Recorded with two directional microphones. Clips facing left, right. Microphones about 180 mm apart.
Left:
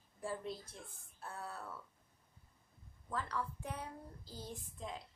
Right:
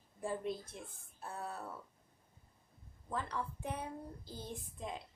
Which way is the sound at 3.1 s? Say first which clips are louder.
Right 1 dB; 20° right (ahead or behind).